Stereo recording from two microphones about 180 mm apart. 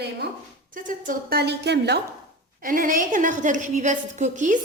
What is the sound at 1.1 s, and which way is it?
Speech, 60° right (ahead or behind).